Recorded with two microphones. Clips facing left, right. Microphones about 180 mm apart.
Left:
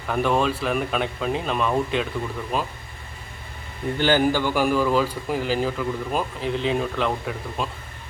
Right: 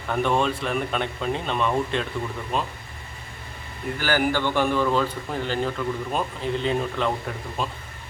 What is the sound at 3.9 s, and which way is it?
Speech, 25° left (ahead or behind).